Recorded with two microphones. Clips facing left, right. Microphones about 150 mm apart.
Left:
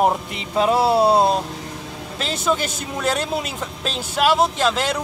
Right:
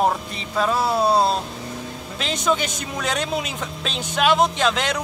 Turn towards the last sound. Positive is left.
turn(degrees=5)  # may be behind; listen again after turning